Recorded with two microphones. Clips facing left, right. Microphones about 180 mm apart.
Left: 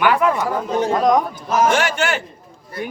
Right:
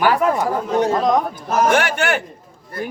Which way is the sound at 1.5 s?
55° right (ahead or behind).